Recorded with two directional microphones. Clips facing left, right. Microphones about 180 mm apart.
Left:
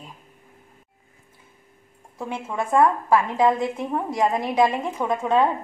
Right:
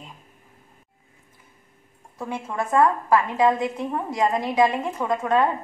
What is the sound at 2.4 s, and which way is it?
Speech, 10° left (ahead or behind).